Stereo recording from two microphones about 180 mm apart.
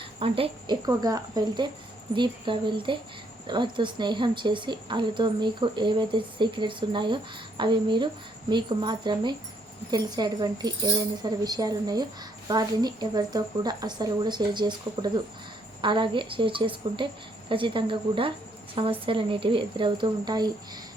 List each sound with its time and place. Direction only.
0.2 s a woman's voice: 30° right (ahead or behind)
0.9 s a woman's voice: 20° right (ahead or behind)